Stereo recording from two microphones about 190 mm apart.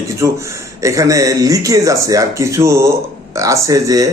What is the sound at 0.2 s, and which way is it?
Speech, 15° right (ahead or behind).